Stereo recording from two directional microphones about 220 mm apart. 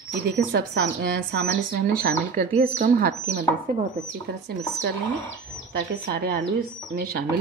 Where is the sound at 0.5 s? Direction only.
50° right (ahead or behind).